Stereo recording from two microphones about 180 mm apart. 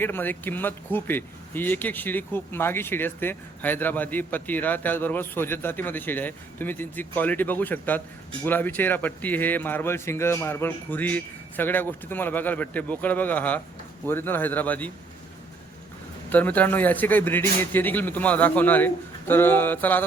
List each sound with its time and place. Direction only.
0.0 s speech: 10° left (ahead or behind)
16.3 s speech: 10° left (ahead or behind)